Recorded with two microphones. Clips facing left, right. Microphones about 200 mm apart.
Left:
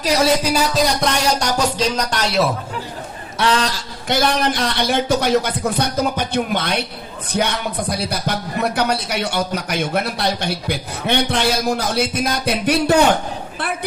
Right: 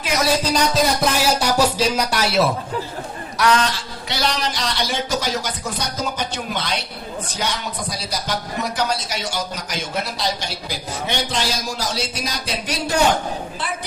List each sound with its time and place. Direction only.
0.0 s a man's voice: 35° left (ahead or behind)
0.4 s music: 5° left (ahead or behind)
3.3 s a man's voice: 30° left (ahead or behind)
4.1 s a man's voice: 50° left (ahead or behind)